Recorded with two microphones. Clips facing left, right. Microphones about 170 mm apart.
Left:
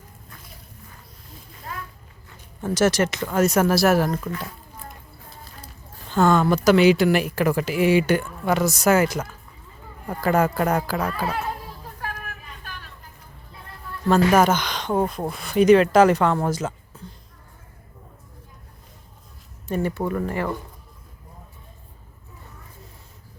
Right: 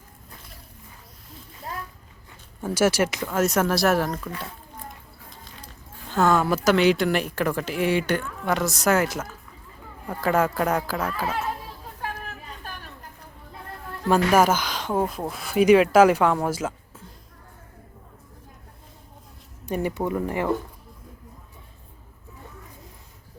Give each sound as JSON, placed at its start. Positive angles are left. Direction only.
{"t": 2.6, "sound": "speech", "side_deg": -10}
{"t": 5.3, "sound": "speech", "side_deg": 0}
{"t": 12.0, "sound": "vehicle", "side_deg": -30}
{"t": 14.1, "sound": "speech", "side_deg": -10}
{"t": 19.6, "sound": "speech", "side_deg": -15}